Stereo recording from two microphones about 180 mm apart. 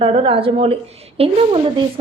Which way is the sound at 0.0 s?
30° right (ahead or behind).